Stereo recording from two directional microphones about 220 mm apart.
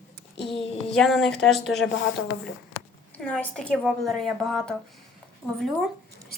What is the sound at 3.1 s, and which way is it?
A woman's voice, 5° left (ahead or behind).